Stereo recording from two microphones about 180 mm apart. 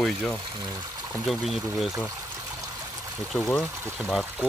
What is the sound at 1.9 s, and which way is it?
Speech, 15° right (ahead or behind).